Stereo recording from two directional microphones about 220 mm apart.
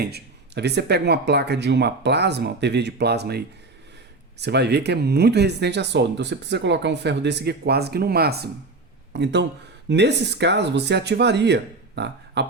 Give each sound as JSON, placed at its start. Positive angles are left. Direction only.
{"t": 0.0, "sound": "speech", "side_deg": -50}